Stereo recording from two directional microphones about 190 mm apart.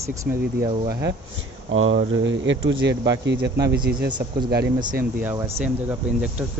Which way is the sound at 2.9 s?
20° right (ahead or behind).